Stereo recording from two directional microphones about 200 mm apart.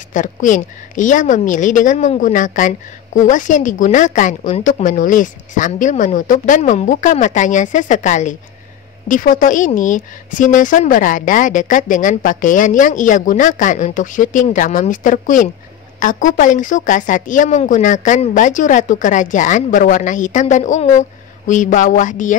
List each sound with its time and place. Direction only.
0.1 s a woman's voice: 40° left (ahead or behind)